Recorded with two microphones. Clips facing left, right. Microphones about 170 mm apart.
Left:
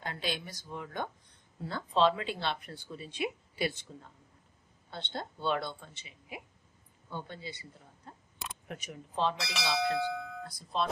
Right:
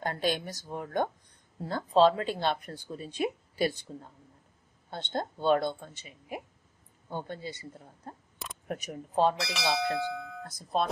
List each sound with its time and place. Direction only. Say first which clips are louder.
0.0 s speech: right 7 dB; 45° right (ahead or behind)
9.4 s speech: right 2 dB; centre (ahead or behind)
10.7 s speech: right 4 dB; 50° right (ahead or behind)